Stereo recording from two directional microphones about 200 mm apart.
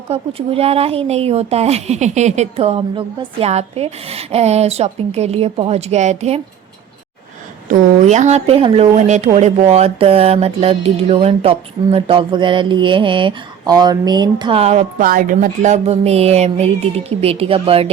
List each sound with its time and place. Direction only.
0.1 s speech: 30° right (ahead or behind)
7.7 s speech: 35° right (ahead or behind)